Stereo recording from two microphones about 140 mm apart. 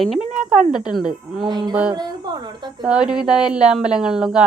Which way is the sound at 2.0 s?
30° right (ahead or behind).